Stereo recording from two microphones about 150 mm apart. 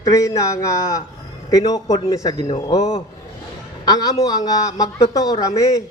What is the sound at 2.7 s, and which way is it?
Speech, 40° left (ahead or behind).